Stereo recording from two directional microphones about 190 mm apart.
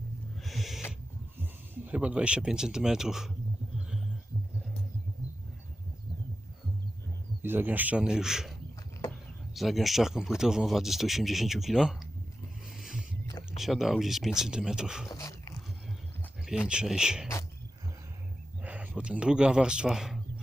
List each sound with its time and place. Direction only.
0.4 s owl: centre (ahead or behind)
1.9 s speech: 5° right (ahead or behind)
3.8 s music: 5° right (ahead or behind)
7.4 s speech: 10° right (ahead or behind)
9.6 s speech: centre (ahead or behind)
12.8 s a sound: centre (ahead or behind)
13.6 s speech: centre (ahead or behind)
15.1 s dog: 15° left (ahead or behind)
16.6 s speech: 5° right (ahead or behind)
18.6 s speech: 5° right (ahead or behind)